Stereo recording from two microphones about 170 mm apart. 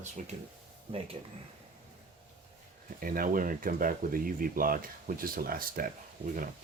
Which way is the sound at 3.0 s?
55° right (ahead or behind).